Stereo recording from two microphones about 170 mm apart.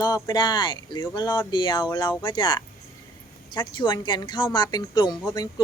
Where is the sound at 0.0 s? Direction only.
25° left (ahead or behind).